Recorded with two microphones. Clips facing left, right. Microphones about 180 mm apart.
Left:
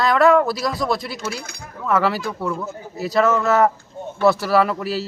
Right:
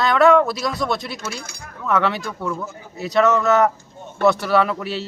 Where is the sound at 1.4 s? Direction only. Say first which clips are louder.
Left 1 dB; 60° left (ahead or behind).